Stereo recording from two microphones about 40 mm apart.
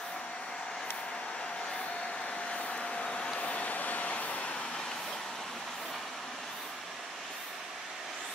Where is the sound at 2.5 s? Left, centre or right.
Left.